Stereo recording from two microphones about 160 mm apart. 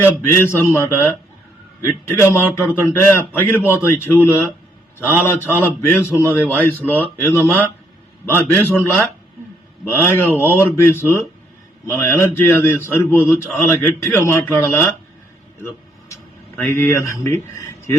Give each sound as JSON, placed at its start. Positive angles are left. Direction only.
{"t": 0.0, "sound": "speech", "side_deg": 15}
{"t": 3.6, "sound": "a man's voice", "side_deg": -10}
{"t": 3.8, "sound": "speech", "side_deg": 15}
{"t": 8.5, "sound": "speech", "side_deg": 15}
{"t": 15.6, "sound": "a sound", "side_deg": 20}
{"t": 16.6, "sound": "speech", "side_deg": 10}